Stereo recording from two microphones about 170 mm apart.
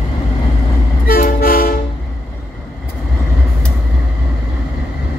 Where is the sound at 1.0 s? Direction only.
60° left (ahead or behind).